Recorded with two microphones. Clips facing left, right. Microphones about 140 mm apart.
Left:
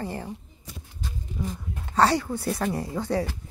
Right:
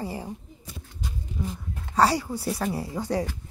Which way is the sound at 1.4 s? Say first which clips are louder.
Left 1 dB; centre (ahead or behind).